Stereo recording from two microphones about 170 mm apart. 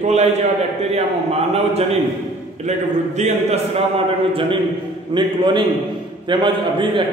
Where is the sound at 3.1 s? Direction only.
40° right (ahead or behind).